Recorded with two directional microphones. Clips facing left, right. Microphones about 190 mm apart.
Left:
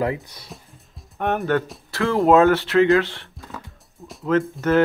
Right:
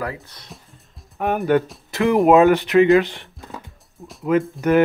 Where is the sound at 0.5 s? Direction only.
Centre (ahead or behind).